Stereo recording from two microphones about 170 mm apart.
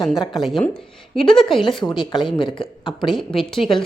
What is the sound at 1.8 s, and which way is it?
Speech, 25° left (ahead or behind).